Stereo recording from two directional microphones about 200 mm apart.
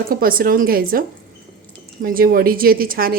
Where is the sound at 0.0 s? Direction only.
45° right (ahead or behind).